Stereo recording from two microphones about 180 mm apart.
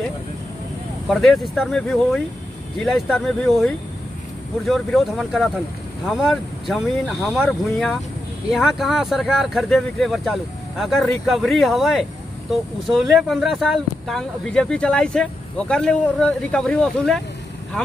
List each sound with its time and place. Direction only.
1.0 s speech: centre (ahead or behind)